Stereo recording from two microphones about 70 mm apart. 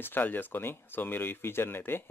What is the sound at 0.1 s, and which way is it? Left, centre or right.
Speech, left.